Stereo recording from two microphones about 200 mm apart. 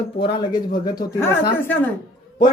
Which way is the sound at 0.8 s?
10° left (ahead or behind).